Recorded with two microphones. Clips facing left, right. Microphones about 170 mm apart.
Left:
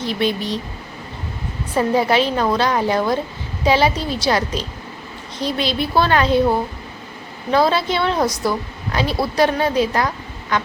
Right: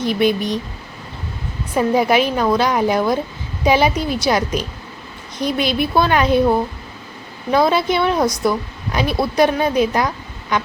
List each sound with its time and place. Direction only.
0.0 s a woman's voice: 15° right (ahead or behind)
1.9 s a woman's voice: 15° right (ahead or behind)
7.5 s a woman's voice: 15° right (ahead or behind)
8.2 s speech: 5° left (ahead or behind)
8.9 s a woman's voice: 15° right (ahead or behind)